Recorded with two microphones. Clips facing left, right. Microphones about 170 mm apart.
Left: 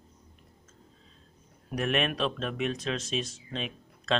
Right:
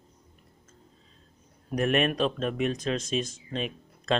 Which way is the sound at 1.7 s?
45° right (ahead or behind).